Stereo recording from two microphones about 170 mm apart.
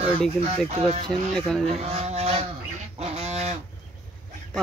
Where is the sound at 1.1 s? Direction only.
5° left (ahead or behind).